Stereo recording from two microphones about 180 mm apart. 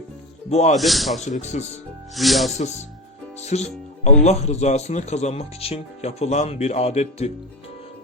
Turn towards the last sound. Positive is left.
turn(degrees=35)  # may be behind; listen again after turning